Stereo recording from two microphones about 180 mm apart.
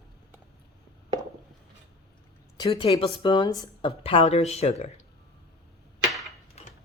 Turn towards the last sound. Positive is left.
turn(degrees=0)  # may be behind; listen again after turning